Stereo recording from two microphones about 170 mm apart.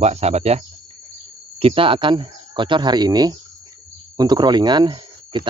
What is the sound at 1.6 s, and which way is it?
Speech, 30° right (ahead or behind).